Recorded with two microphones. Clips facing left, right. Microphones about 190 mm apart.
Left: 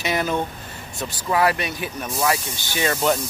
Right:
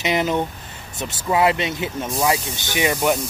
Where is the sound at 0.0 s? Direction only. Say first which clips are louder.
Right 2 dB; 20° right (ahead or behind).